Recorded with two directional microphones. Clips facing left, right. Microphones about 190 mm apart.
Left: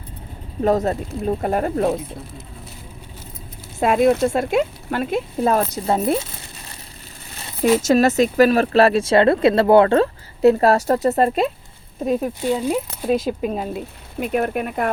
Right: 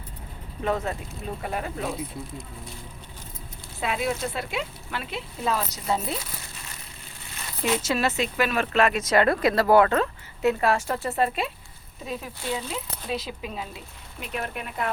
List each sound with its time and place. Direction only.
0.6 s speech: 40° left (ahead or behind)
3.8 s speech: 50° left (ahead or behind)
7.6 s speech: 45° left (ahead or behind)